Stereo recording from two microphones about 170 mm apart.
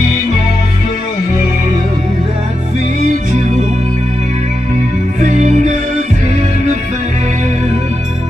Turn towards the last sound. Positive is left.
turn(degrees=-45)  # may be behind; listen again after turning